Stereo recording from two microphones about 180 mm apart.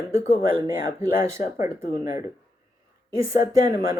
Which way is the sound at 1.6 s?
50° left (ahead or behind).